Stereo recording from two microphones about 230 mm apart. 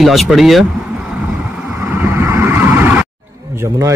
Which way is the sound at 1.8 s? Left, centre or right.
Centre.